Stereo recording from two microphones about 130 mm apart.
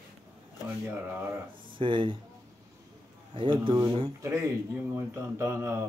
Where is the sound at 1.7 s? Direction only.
40° right (ahead or behind).